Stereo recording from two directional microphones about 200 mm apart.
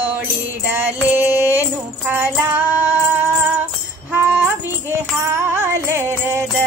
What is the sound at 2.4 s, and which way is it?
Female singing, 10° right (ahead or behind).